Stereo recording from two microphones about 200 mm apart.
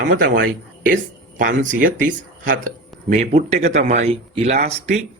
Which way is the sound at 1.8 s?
40° right (ahead or behind).